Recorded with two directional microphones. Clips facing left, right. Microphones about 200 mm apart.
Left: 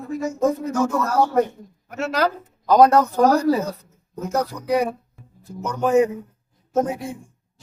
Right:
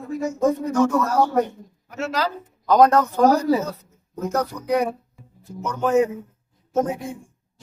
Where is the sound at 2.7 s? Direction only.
10° left (ahead or behind).